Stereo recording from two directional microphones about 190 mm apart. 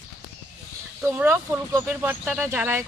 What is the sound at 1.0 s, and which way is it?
Speech, 10° right (ahead or behind).